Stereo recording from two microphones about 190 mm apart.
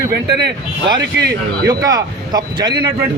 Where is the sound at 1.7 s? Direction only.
20° right (ahead or behind).